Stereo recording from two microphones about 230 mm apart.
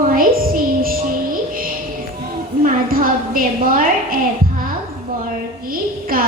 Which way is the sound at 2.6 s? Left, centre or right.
Right.